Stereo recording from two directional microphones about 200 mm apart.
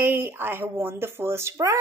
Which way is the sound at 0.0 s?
10° right (ahead or behind).